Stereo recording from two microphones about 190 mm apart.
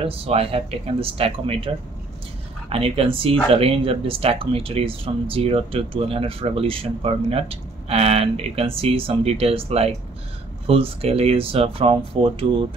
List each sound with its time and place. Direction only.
0.0 s speech: 30° right (ahead or behind)
2.7 s speech: 30° right (ahead or behind)